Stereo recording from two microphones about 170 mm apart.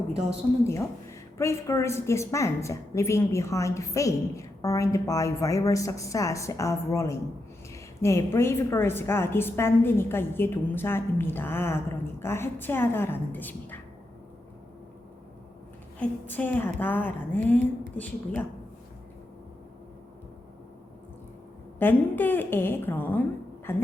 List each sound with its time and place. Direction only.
0.6 s a woman's voice: 15° left (ahead or behind)
16.0 s a woman's voice: 10° left (ahead or behind)
21.8 s a woman's voice: 10° left (ahead or behind)